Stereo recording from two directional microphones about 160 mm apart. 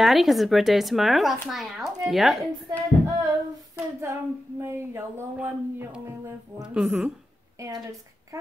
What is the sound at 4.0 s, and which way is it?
Speech, 15° right (ahead or behind).